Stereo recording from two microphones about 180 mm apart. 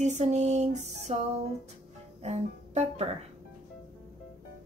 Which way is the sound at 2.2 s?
35° right (ahead or behind).